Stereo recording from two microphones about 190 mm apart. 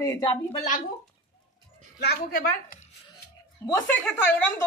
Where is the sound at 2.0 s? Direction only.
55° left (ahead or behind).